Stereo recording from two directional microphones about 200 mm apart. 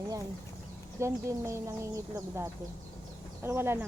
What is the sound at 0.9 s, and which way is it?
Speech, 15° right (ahead or behind).